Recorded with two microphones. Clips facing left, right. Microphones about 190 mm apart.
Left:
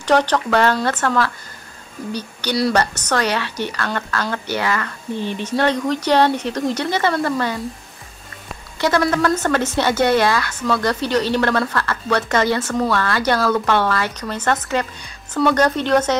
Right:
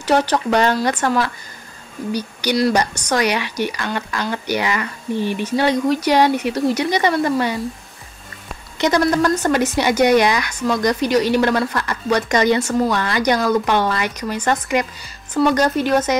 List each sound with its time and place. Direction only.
0.0 s a woman's voice: 10° right (ahead or behind)
2.7 s a woman's voice: 10° right (ahead or behind)
8.7 s a woman's voice: 20° right (ahead or behind)